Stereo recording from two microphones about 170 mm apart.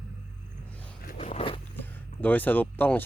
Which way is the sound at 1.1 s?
40° left (ahead or behind).